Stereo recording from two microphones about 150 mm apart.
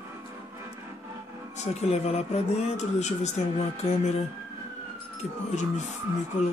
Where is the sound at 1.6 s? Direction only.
45° left (ahead or behind).